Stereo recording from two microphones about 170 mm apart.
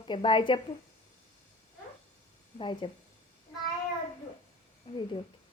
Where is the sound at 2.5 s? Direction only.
30° left (ahead or behind).